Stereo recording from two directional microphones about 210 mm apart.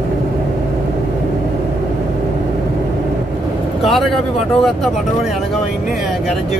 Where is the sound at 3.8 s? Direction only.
Centre (ahead or behind).